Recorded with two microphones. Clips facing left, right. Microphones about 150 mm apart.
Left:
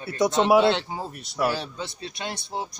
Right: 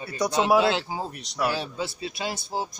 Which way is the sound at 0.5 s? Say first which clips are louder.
Left 2 dB; centre (ahead or behind).